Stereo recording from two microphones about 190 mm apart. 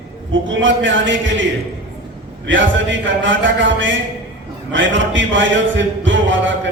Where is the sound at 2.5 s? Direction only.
75° right (ahead or behind).